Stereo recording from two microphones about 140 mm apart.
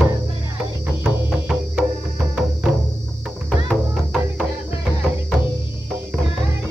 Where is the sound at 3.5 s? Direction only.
Centre (ahead or behind).